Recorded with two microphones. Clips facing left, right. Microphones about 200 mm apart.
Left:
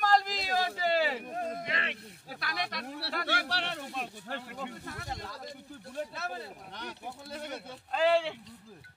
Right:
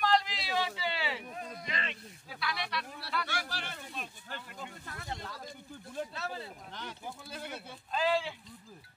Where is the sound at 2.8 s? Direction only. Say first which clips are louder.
Left 3 dB; 70° left (ahead or behind).